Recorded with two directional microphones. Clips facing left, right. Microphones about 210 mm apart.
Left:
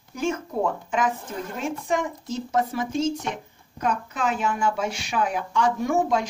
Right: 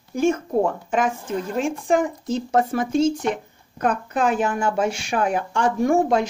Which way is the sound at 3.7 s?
55° right (ahead or behind).